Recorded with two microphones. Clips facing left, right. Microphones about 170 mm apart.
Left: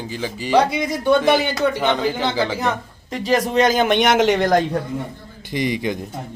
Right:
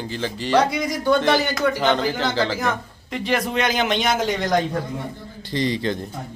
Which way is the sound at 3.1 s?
40° left (ahead or behind).